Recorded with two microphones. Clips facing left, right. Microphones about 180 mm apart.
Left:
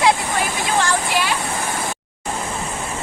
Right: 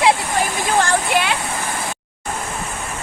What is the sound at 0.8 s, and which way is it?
Speech, 55° right (ahead or behind).